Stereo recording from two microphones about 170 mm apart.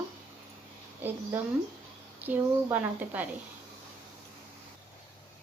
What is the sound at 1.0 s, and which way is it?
Speech, 15° right (ahead or behind).